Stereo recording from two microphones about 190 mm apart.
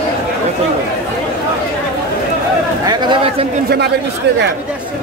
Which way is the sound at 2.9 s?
25° right (ahead or behind).